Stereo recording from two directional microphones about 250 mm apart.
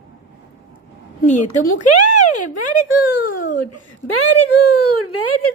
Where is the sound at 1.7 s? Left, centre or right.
Left.